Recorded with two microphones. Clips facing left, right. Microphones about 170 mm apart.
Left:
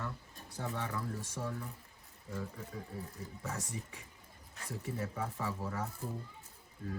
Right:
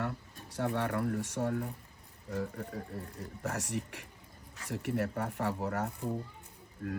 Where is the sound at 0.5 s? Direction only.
65° right (ahead or behind).